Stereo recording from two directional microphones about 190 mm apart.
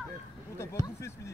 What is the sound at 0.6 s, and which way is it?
Speech, 15° left (ahead or behind).